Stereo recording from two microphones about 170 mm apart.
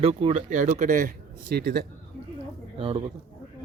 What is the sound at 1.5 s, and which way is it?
Speech, 65° right (ahead or behind).